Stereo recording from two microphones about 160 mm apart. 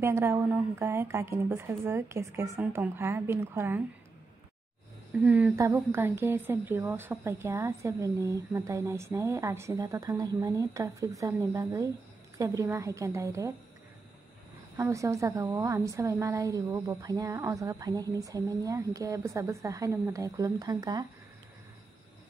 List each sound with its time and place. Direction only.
0.0 s a woman's voice: 15° right (ahead or behind)
5.1 s a woman's voice: 10° right (ahead or behind)
5.6 s a woman's voice: 20° right (ahead or behind)
14.8 s a woman's voice: 20° right (ahead or behind)